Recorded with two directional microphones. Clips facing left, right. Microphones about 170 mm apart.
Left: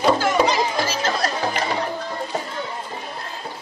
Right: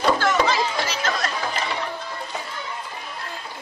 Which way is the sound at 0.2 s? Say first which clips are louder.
Left 2 dB; 10° left (ahead or behind).